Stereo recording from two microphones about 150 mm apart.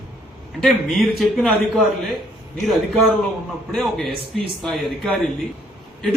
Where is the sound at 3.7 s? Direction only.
Centre (ahead or behind).